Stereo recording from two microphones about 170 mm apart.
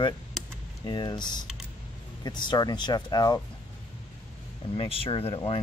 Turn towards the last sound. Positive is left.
turn(degrees=35)  # may be behind; listen again after turning